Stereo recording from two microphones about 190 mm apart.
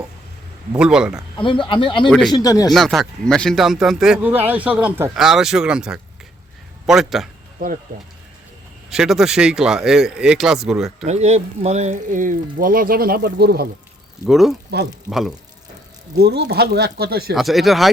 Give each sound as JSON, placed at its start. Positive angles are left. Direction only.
{"t": 0.7, "sound": "speech", "side_deg": -5}
{"t": 1.4, "sound": "speech", "side_deg": 25}
{"t": 2.0, "sound": "speech", "side_deg": 0}
{"t": 2.3, "sound": "speech", "side_deg": 20}
{"t": 2.7, "sound": "speech", "side_deg": 0}
{"t": 8.9, "sound": "speech", "side_deg": 0}
{"t": 11.0, "sound": "speech", "side_deg": -35}
{"t": 14.3, "sound": "speech", "side_deg": 0}
{"t": 14.7, "sound": "speech", "side_deg": -60}
{"t": 15.1, "sound": "speech", "side_deg": 0}
{"t": 16.1, "sound": "speech", "side_deg": -60}
{"t": 17.3, "sound": "speech", "side_deg": 0}